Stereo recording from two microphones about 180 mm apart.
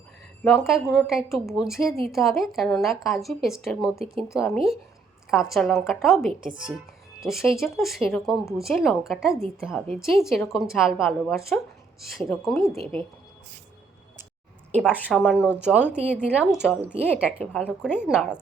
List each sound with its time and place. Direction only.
0.4 s a woman's voice: centre (ahead or behind)
4.0 s speech: 30° right (ahead or behind)
4.3 s a woman's voice: centre (ahead or behind)
15.1 s a woman's voice: centre (ahead or behind)
17.4 s a woman's voice: 5° left (ahead or behind)
17.7 s a woman's voice: 5° right (ahead or behind)